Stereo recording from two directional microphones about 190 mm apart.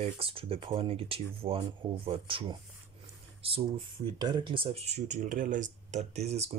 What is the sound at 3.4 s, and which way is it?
Speech, 30° right (ahead or behind).